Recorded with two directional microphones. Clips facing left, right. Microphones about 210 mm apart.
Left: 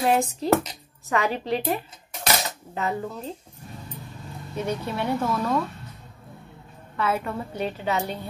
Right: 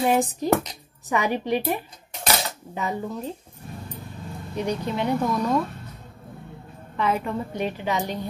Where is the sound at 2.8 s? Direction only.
15° right (ahead or behind).